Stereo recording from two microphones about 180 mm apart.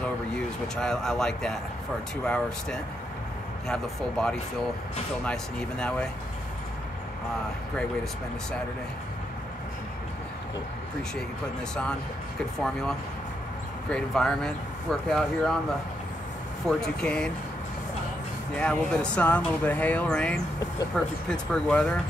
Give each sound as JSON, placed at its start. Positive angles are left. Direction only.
{"t": 0.3, "sound": "speech", "side_deg": 5}
{"t": 13.8, "sound": "speech", "side_deg": 5}
{"t": 16.6, "sound": "speech", "side_deg": 5}
{"t": 18.6, "sound": "speech", "side_deg": 5}